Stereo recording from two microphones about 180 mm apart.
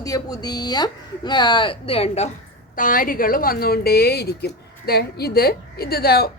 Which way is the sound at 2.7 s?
50° left (ahead or behind).